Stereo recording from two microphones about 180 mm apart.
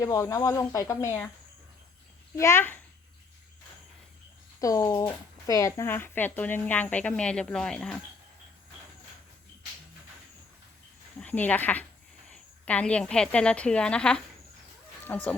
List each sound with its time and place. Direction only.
0.0 s speech: 15° left (ahead or behind)
2.4 s speech: 15° left (ahead or behind)
4.6 s speech: 20° left (ahead or behind); by 7.9 s centre (ahead or behind)
11.2 s a woman's voice: 10° left (ahead or behind)